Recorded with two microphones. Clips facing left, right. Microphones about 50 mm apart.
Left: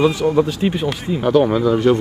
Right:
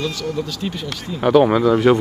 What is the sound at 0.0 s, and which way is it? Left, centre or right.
Speech, left.